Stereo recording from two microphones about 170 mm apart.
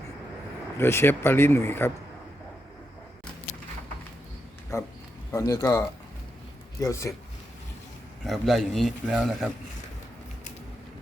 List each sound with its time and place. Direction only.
0.8 s speech: 15° left (ahead or behind)
4.7 s speech: 15° left (ahead or behind)
8.2 s a man's voice: centre (ahead or behind)